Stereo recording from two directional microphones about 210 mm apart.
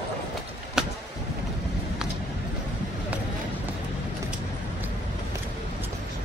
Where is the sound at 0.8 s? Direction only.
Centre (ahead or behind).